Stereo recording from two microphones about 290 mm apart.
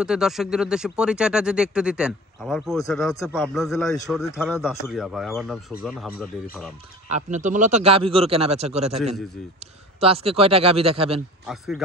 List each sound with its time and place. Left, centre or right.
0.0 s speech: centre
4.4 s speech: centre
7.1 s speech: right
11.4 s speech: centre